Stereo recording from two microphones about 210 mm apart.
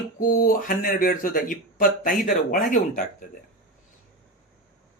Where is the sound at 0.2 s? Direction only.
40° left (ahead or behind).